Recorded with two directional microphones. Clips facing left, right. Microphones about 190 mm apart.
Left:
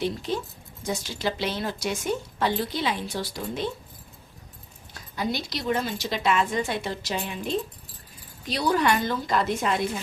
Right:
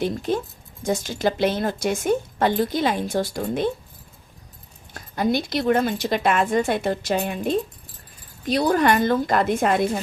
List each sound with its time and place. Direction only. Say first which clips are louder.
0.0 s speech: right 4 dB; 50° right (ahead or behind)
4.9 s speech: right 7 dB; 50° right (ahead or behind)